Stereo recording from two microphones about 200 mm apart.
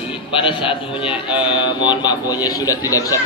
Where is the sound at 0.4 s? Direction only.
25° left (ahead or behind).